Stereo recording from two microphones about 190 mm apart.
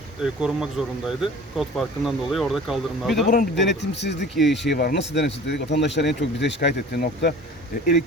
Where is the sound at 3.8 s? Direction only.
65° left (ahead or behind).